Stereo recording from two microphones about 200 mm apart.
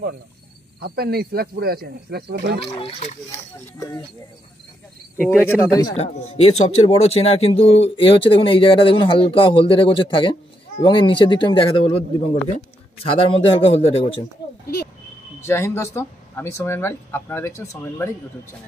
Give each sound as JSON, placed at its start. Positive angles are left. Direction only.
{"t": 0.7, "sound": "speech", "side_deg": -50}
{"t": 2.8, "sound": "speech", "side_deg": 35}
{"t": 5.5, "sound": "speech", "side_deg": 20}
{"t": 5.9, "sound": "speech", "side_deg": 35}
{"t": 15.4, "sound": "speech", "side_deg": 15}